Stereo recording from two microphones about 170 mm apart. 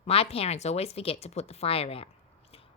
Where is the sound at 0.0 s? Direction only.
35° left (ahead or behind).